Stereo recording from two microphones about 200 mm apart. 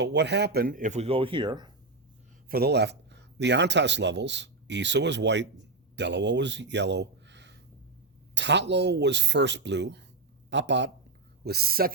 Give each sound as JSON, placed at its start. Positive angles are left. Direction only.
{"t": 0.0, "sound": "speech", "side_deg": -60}
{"t": 2.5, "sound": "a man's voice", "side_deg": -55}
{"t": 11.4, "sound": "speech", "side_deg": -50}